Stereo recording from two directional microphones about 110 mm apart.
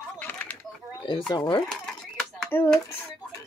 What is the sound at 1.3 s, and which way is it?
Speech, 40° left (ahead or behind).